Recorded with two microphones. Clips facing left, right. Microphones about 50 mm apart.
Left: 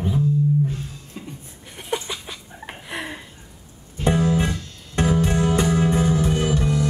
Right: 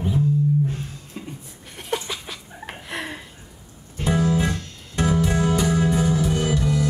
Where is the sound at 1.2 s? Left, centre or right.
Centre.